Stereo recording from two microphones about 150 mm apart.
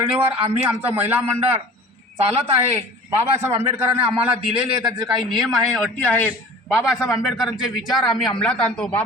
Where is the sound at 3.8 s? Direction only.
10° right (ahead or behind).